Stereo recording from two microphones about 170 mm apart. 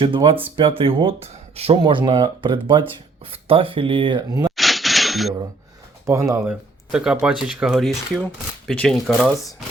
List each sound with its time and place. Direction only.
0.0 s speech: 30° right (ahead or behind)
4.5 s a sound: centre (ahead or behind)
6.1 s speech: 20° right (ahead or behind)
6.9 s speech: 5° right (ahead or behind)